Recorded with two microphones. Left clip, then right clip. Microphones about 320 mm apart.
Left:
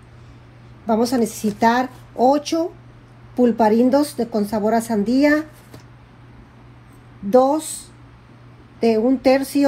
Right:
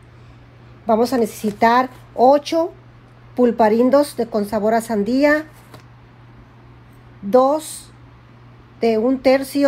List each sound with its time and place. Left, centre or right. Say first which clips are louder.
0.8 s speech: right 3 dB; right
7.2 s speech: right 1 dB; right